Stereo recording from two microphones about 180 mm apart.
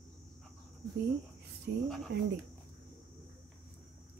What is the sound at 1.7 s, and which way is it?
Speech, 60° right (ahead or behind).